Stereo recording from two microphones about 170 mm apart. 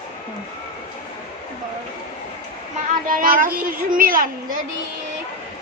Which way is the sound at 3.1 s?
55° right (ahead or behind).